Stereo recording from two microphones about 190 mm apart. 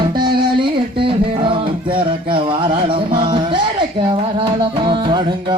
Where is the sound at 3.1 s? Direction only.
25° right (ahead or behind).